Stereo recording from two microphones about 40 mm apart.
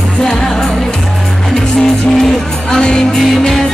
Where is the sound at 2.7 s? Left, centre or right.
Left.